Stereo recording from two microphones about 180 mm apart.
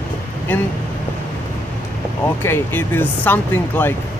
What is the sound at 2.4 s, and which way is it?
Speech, 10° left (ahead or behind).